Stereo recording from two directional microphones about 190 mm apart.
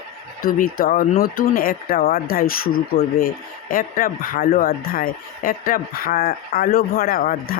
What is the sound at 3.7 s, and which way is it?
Speech, 45° left (ahead or behind).